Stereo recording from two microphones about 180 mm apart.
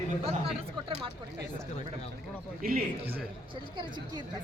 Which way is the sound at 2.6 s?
55° right (ahead or behind).